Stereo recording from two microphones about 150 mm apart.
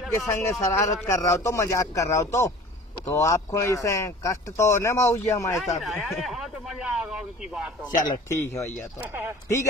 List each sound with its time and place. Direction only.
0.3 s speech: 20° left (ahead or behind)
5.8 s speech: centre (ahead or behind)
8.1 s speech: 20° left (ahead or behind)
9.0 s speech: 15° right (ahead or behind)